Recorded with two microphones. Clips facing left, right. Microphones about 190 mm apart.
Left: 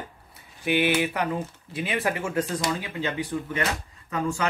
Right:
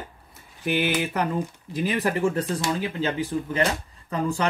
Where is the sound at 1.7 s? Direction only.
40° right (ahead or behind).